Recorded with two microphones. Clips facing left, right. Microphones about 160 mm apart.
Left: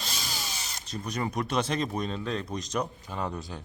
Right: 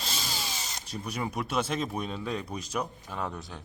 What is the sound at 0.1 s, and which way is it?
Speech, centre (ahead or behind).